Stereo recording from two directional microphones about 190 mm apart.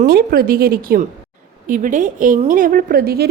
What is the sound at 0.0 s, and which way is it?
A woman's voice, 50° right (ahead or behind).